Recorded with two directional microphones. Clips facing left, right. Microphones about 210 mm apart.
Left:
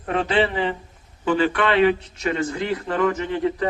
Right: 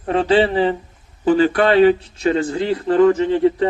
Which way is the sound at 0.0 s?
30° right (ahead or behind).